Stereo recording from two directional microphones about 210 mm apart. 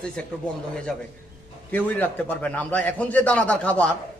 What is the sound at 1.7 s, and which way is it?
A man's voice, 10° left (ahead or behind).